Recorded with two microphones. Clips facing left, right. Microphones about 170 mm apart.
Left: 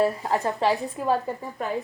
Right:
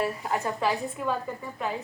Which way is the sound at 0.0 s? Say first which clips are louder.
Left 5 dB; 35° left (ahead or behind).